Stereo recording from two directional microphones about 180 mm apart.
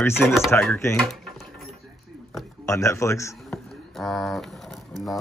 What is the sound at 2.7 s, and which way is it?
Speech, 15° left (ahead or behind).